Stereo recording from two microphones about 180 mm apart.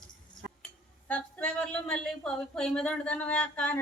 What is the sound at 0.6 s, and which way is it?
Speech, 5° left (ahead or behind).